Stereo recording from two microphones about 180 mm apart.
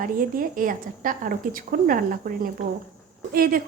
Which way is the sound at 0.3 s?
50° right (ahead or behind).